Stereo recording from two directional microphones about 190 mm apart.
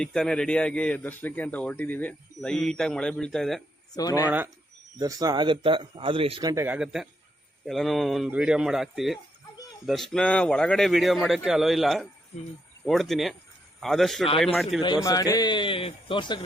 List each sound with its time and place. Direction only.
0.0 s speech: 5° left (ahead or behind)
3.9 s a man's voice: 20° left (ahead or behind)
4.3 s speech: 10° right (ahead or behind)
6.7 s speech: 5° right (ahead or behind)
15.0 s a man's voice: 20° left (ahead or behind)